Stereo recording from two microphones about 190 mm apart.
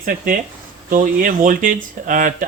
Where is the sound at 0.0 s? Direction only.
45° right (ahead or behind).